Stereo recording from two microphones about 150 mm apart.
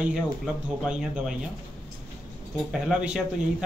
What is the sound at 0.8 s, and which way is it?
Speech, 5° right (ahead or behind).